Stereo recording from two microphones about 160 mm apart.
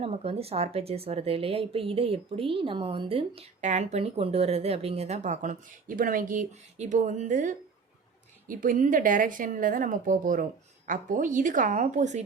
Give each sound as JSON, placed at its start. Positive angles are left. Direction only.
{"t": 0.0, "sound": "a woman's voice", "side_deg": -40}